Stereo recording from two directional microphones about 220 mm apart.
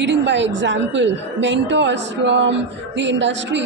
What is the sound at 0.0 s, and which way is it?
A woman's voice, 55° right (ahead or behind).